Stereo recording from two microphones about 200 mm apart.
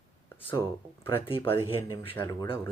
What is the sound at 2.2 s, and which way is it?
Speech, 20° left (ahead or behind).